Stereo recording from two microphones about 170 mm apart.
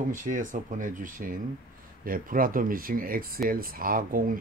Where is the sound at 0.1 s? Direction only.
50° right (ahead or behind).